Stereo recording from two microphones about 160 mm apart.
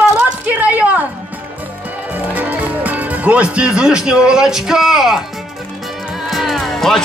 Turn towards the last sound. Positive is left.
turn(degrees=0)  # may be behind; listen again after turning